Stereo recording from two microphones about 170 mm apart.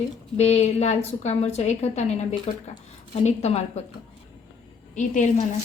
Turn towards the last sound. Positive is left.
turn(degrees=45)  # may be behind; listen again after turning